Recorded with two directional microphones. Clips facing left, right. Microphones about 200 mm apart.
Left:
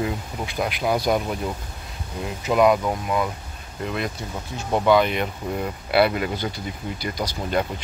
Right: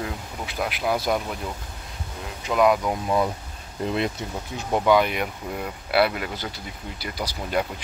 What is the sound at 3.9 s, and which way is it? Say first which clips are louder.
Speech: right 2 dB; 25° right (ahead or behind).